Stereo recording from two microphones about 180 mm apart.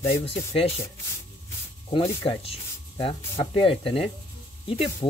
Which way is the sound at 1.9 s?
30° left (ahead or behind).